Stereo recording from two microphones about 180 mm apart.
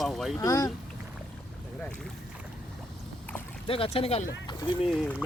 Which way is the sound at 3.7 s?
30° left (ahead or behind).